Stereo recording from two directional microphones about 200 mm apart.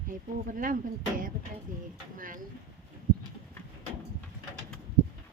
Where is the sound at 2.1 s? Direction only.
45° right (ahead or behind).